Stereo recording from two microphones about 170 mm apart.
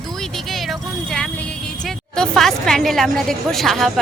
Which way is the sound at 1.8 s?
5° left (ahead or behind).